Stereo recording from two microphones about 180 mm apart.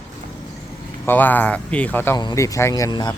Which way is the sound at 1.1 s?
10° left (ahead or behind).